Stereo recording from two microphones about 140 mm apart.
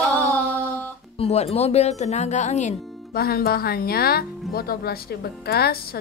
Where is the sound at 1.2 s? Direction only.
50° left (ahead or behind).